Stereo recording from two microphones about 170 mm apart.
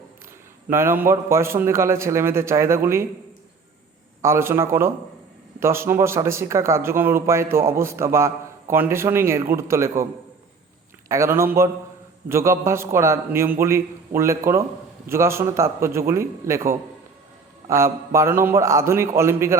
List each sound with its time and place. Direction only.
0.7 s speech: 15° right (ahead or behind)
4.2 s speech: 15° right (ahead or behind)
11.1 s speech: 15° right (ahead or behind)
17.7 s speech: 15° right (ahead or behind)